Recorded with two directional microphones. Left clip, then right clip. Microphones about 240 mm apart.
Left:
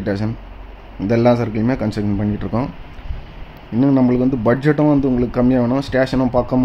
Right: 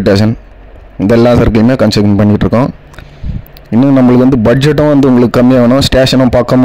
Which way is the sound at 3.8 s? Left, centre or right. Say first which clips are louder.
Right 8 dB; right.